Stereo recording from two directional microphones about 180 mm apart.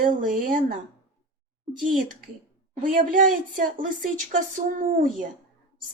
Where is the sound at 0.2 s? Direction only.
50° right (ahead or behind).